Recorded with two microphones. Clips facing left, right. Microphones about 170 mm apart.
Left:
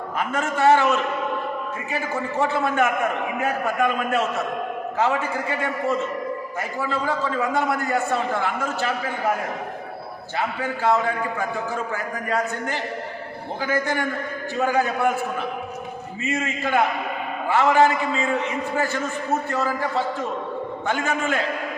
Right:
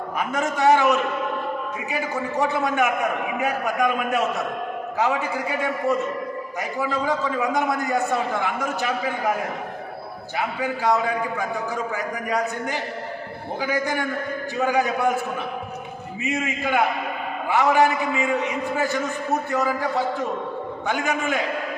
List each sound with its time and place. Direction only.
0.2 s a man's voice: 15° right (ahead or behind)
10.3 s a man's voice: 15° right (ahead or behind)
16.2 s a man's voice: 15° right (ahead or behind)
20.8 s a man's voice: 15° right (ahead or behind)